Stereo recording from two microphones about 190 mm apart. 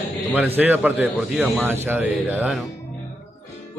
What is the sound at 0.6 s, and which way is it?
A man's voice, 10° right (ahead or behind).